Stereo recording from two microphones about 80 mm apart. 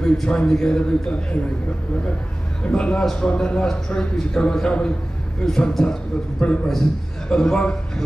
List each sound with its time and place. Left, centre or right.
0.0 s a man's voice: centre
2.6 s a man's voice: centre
6.7 s a man's voice: centre